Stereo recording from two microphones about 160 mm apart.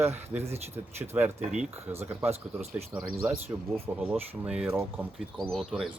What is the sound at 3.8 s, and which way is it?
Speech, 10° right (ahead or behind).